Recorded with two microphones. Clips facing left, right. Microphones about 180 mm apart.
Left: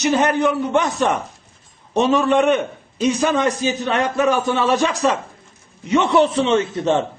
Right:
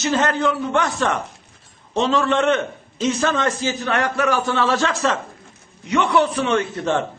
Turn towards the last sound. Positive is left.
turn(degrees=20)  # may be behind; listen again after turning